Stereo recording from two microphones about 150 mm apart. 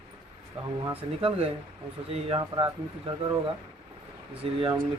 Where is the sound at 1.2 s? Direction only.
40° right (ahead or behind).